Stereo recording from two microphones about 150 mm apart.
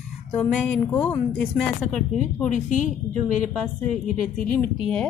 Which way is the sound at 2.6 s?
60° left (ahead or behind).